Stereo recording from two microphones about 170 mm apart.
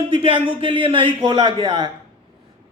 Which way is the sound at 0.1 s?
30° right (ahead or behind).